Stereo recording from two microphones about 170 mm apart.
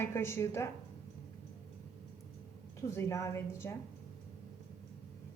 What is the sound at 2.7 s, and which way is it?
A woman's voice, 15° left (ahead or behind).